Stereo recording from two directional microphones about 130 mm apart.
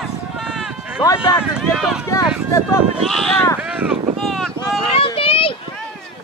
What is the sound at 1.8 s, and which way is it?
Speech, 5° right (ahead or behind).